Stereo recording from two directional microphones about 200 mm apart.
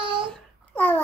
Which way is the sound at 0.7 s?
10° left (ahead or behind).